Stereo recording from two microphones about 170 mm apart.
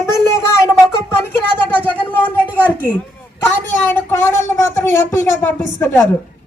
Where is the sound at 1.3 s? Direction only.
10° left (ahead or behind).